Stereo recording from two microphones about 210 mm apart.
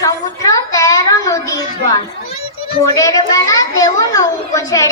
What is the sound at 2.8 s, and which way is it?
A child's voice, 15° left (ahead or behind).